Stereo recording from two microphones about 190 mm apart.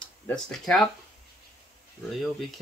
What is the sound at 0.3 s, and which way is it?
Speech, centre (ahead or behind).